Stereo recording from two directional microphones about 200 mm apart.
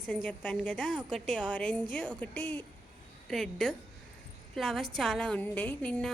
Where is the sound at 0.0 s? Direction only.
5° left (ahead or behind).